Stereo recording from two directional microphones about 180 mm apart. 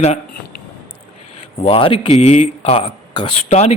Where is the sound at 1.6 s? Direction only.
30° left (ahead or behind).